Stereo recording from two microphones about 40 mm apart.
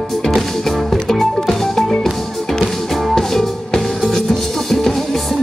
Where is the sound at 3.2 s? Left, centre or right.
Centre.